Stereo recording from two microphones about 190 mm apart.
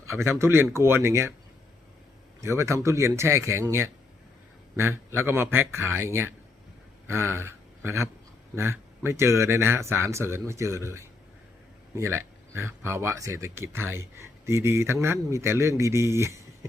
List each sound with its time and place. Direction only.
0.2 s speech: 15° right (ahead or behind)
2.4 s speech: 15° right (ahead or behind)
7.1 s a sound: 15° right (ahead or behind)
8.5 s speech: 15° right (ahead or behind)